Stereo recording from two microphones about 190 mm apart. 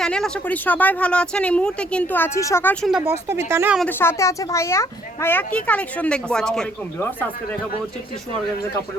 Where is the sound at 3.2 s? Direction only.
15° right (ahead or behind).